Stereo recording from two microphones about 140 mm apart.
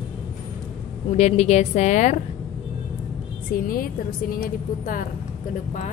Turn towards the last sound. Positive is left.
turn(degrees=75)  # may be behind; listen again after turning